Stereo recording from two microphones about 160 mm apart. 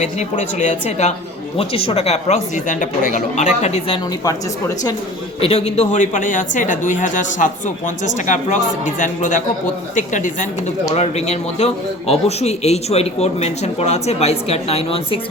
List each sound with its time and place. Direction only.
0.0 s a woman's voice: 50° left (ahead or behind)
5.4 s a woman's voice: 40° left (ahead or behind)